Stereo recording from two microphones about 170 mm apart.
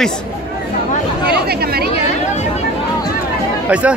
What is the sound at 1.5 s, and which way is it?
Speech, 65° right (ahead or behind).